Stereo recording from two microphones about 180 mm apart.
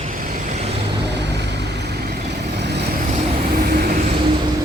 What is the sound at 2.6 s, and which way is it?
Vehicle, 70° right (ahead or behind).